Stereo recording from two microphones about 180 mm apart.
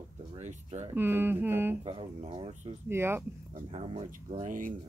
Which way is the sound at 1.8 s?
30° right (ahead or behind).